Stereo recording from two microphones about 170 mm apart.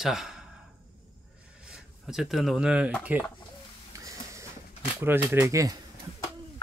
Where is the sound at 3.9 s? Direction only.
15° right (ahead or behind).